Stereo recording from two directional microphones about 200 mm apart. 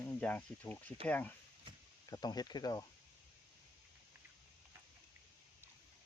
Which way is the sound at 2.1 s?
20° left (ahead or behind).